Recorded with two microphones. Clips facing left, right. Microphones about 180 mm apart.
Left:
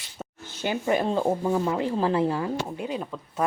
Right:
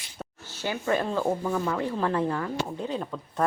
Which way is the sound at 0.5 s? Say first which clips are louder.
Left 2 dB; 20° left (ahead or behind).